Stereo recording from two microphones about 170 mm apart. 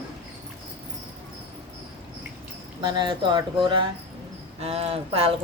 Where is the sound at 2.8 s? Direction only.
25° right (ahead or behind).